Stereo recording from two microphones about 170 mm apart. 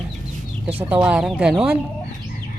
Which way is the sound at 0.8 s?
10° right (ahead or behind).